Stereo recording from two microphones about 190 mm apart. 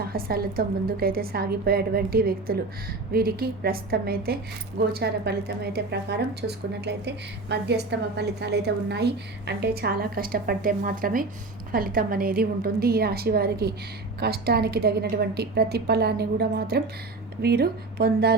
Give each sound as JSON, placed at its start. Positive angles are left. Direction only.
{"t": 0.0, "sound": "a woman's voice", "side_deg": -55}
{"t": 7.5, "sound": "a woman's voice", "side_deg": -65}